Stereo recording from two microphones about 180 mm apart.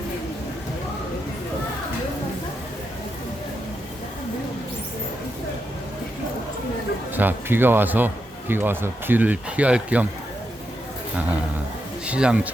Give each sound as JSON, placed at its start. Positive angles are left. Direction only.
{"t": 7.2, "sound": "speech", "side_deg": -10}
{"t": 12.0, "sound": "speech", "side_deg": -5}